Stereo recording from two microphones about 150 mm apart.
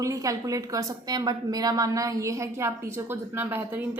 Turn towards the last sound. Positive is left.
turn(degrees=-15)  # may be behind; listen again after turning